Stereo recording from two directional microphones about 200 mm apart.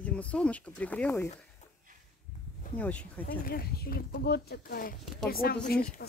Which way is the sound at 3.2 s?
50° left (ahead or behind).